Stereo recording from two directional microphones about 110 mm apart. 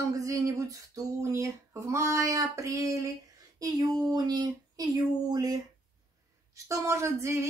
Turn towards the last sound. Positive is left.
turn(degrees=-25)  # may be behind; listen again after turning